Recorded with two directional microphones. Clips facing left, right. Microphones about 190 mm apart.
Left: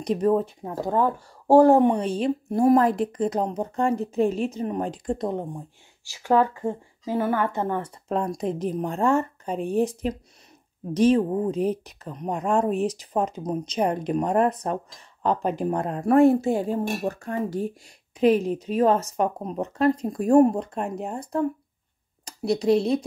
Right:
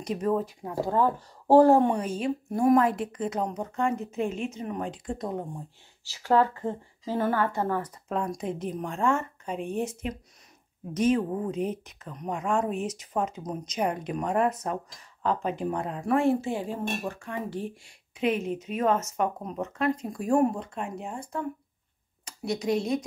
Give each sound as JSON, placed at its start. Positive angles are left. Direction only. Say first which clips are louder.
{"t": 0.0, "sound": "speech", "louder": "left 5 dB", "side_deg": 35}
{"t": 0.8, "sound": "a woman's voice", "louder": "left 2 dB", "side_deg": 15}
{"t": 2.0, "sound": "speech", "louder": "left 4 dB", "side_deg": 35}
{"t": 6.0, "sound": "a woman's voice", "louder": "left 2 dB", "side_deg": 15}
{"t": 8.1, "sound": "speech", "louder": "left 5 dB", "side_deg": 35}
{"t": 15.4, "sound": "speech", "louder": "left 4 dB", "side_deg": 45}